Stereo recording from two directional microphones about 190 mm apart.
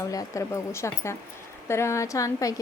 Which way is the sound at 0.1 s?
15° left (ahead or behind).